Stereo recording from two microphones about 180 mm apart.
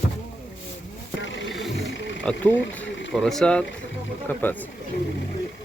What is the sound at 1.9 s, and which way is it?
Speech, 90° left.